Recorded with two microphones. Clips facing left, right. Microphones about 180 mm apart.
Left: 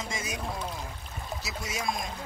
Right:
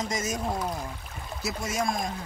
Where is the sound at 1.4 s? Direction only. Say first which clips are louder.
Right 9 dB; 50° right (ahead or behind).